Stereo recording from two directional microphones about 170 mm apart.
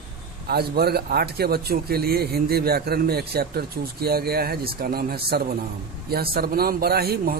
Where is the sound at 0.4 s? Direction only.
65° right (ahead or behind).